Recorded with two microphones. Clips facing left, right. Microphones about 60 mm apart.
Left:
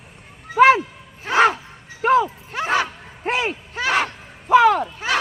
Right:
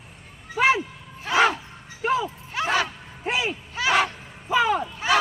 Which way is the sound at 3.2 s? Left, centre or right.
Left.